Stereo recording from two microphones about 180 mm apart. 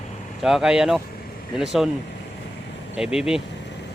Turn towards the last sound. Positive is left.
turn(degrees=-5)  # may be behind; listen again after turning